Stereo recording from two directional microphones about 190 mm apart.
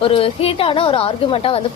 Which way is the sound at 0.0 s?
30° left (ahead or behind).